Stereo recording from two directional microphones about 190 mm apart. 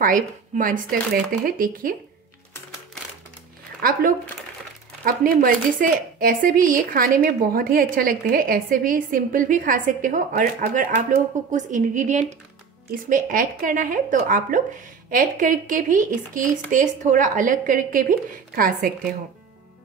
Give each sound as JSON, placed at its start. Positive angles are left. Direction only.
{"t": 0.0, "sound": "a woman's voice", "side_deg": -45}
{"t": 3.8, "sound": "speech", "side_deg": -50}
{"t": 5.0, "sound": "speech", "side_deg": -45}